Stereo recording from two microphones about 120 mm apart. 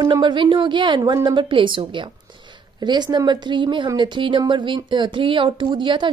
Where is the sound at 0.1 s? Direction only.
40° right (ahead or behind).